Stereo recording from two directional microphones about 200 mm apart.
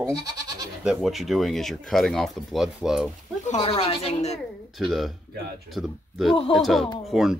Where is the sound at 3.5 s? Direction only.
30° left (ahead or behind).